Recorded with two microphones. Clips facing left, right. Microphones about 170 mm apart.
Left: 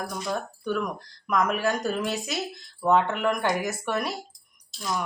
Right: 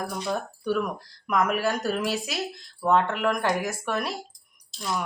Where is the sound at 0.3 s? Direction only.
5° right (ahead or behind).